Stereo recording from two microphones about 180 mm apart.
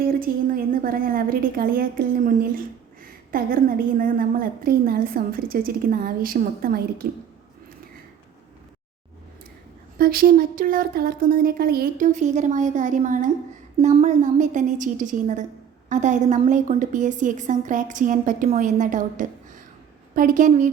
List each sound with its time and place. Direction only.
0.0 s a woman's voice: 55° right (ahead or behind)
10.0 s a woman's voice: 55° right (ahead or behind)